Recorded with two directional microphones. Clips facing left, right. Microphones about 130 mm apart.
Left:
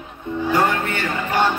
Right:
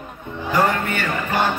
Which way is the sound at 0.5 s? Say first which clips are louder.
Right 1 dB; 25° left (ahead or behind).